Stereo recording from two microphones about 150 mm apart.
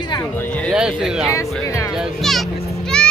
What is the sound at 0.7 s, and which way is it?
Speech, 5° right (ahead or behind).